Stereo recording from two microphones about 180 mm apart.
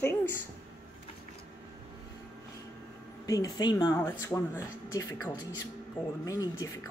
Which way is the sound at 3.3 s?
20° left (ahead or behind).